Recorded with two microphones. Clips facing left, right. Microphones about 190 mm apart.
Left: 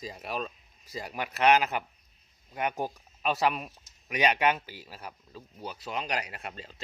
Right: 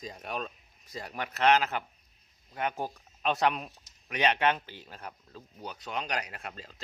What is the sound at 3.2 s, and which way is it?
Speech, 5° left (ahead or behind).